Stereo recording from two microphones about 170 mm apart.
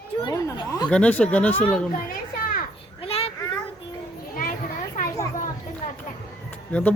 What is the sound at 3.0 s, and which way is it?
Child singing, 35° left (ahead or behind).